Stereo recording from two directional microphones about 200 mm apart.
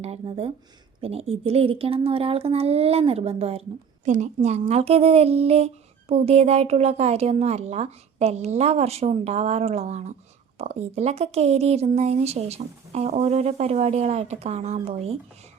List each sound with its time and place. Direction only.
0.0 s speech: 30° right (ahead or behind)